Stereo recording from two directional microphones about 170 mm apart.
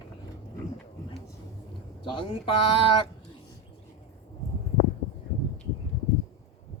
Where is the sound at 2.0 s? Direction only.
30° left (ahead or behind).